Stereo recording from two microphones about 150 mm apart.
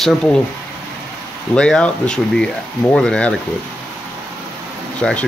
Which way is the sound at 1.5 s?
5° left (ahead or behind).